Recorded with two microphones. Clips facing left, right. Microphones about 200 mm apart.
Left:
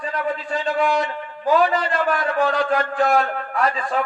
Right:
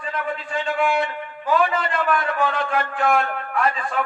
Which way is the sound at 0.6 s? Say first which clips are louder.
Left 1 dB; 40° left (ahead or behind).